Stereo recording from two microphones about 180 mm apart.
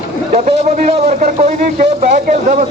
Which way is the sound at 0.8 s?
45° right (ahead or behind).